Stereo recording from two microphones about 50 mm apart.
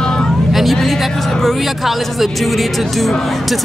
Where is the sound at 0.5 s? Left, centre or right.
Centre.